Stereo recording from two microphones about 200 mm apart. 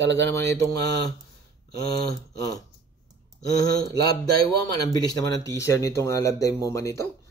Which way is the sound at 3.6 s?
20° left (ahead or behind).